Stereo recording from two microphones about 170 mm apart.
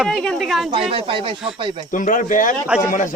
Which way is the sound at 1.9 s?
50° left (ahead or behind).